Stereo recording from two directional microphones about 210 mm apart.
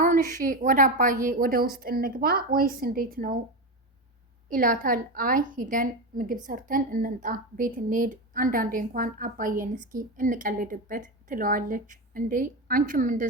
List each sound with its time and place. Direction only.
0.0 s a woman's voice: 40° right (ahead or behind)
4.4 s a woman's voice: 40° right (ahead or behind)